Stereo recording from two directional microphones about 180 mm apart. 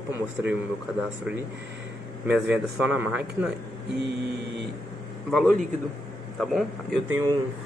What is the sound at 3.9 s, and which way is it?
Mantra, 70° right (ahead or behind).